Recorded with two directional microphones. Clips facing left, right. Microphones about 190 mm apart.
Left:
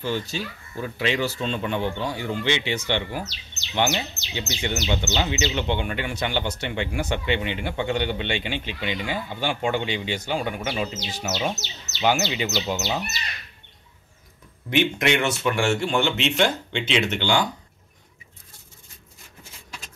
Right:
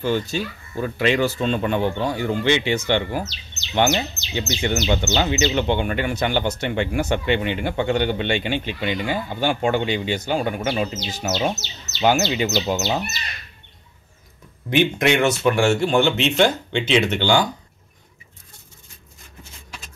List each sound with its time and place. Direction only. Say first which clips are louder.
0.0 s speech: right 5 dB; 55° right (ahead or behind)
14.7 s speech: right 3 dB; 40° right (ahead or behind)